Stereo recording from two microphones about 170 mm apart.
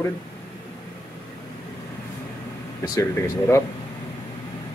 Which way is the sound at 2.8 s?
20° left (ahead or behind).